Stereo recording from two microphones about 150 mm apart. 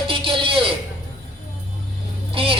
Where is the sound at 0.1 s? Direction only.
35° right (ahead or behind).